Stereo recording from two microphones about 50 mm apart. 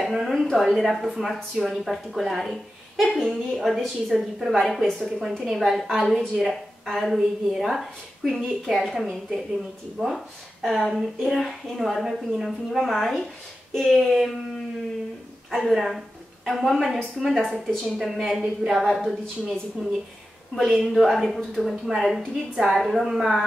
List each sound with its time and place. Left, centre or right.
0.0 s a sound: centre
0.7 s a woman's voice: centre
0.9 s speech: centre
5.6 s speech: centre
6.0 s speech: centre
6.4 s speech: centre
10.0 s speech: centre
10.6 s speech: centre
15.5 s speech: centre
19.8 s speech: centre